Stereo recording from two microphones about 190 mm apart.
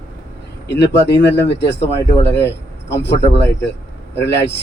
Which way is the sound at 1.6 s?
65° left (ahead or behind).